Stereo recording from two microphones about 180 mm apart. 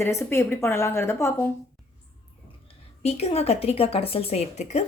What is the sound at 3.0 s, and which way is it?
A woman's voice, 35° left (ahead or behind).